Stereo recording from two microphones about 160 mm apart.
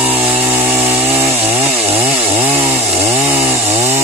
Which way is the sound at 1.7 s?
35° right (ahead or behind).